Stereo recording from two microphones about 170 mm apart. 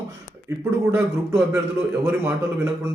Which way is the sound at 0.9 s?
10° right (ahead or behind).